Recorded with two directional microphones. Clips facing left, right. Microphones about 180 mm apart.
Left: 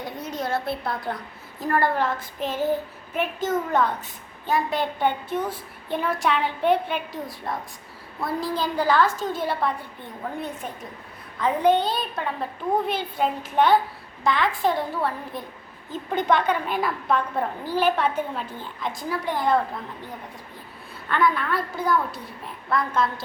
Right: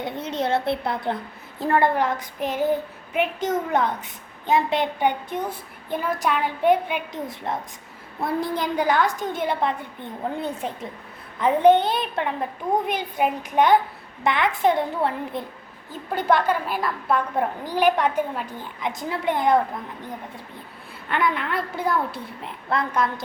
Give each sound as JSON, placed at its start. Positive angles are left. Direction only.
{"t": 0.0, "sound": "a woman's voice", "side_deg": -25}
{"t": 11.3, "sound": "a woman's voice", "side_deg": -20}
{"t": 15.9, "sound": "a woman's voice", "side_deg": -10}
{"t": 21.1, "sound": "a woman's voice", "side_deg": -20}